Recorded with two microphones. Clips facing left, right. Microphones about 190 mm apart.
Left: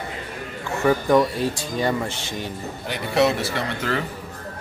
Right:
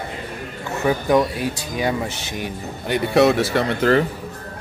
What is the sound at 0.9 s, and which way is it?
Speech, 10° right (ahead or behind).